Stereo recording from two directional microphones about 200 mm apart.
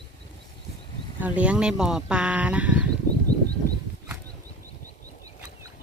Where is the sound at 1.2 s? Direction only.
5° right (ahead or behind).